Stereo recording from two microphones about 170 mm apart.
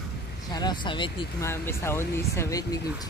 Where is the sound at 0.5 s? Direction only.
25° left (ahead or behind).